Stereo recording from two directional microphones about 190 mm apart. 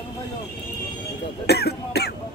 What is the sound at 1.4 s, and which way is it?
Cough, 60° left (ahead or behind).